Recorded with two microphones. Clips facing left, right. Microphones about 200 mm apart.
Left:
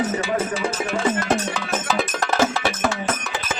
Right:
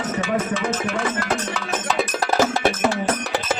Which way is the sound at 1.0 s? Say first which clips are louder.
Left 3 dB; 25° left (ahead or behind).